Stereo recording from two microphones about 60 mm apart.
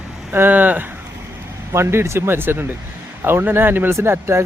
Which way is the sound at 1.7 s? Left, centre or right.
Right.